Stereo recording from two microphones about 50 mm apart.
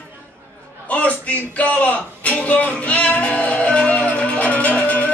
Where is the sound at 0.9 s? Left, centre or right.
Left.